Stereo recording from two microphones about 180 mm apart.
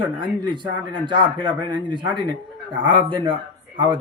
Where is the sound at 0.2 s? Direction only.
25° right (ahead or behind).